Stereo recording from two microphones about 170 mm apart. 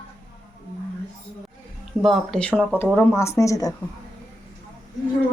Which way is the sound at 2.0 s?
5° left (ahead or behind).